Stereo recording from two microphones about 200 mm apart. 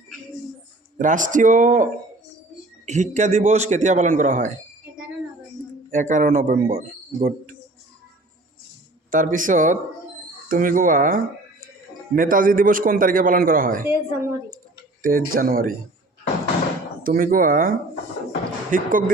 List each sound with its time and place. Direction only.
0.9 s a man's voice: 40° right (ahead or behind)
5.9 s a man's voice: 40° right (ahead or behind)
9.0 s a man's voice: 40° right (ahead or behind)
13.8 s a woman's voice: 15° right (ahead or behind)
15.0 s a man's voice: 45° right (ahead or behind)
17.0 s a man's voice: 45° right (ahead or behind)